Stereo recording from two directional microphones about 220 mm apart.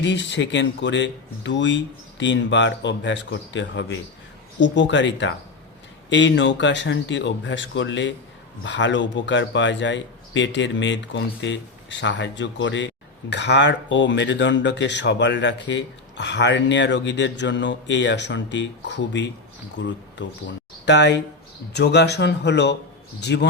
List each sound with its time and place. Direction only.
0.0 s a man's voice: 55° left (ahead or behind)